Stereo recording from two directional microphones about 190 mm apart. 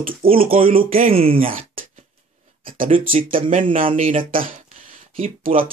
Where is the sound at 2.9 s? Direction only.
30° right (ahead or behind).